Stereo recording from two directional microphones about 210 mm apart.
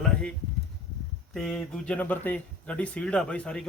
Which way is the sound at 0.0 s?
5° left (ahead or behind).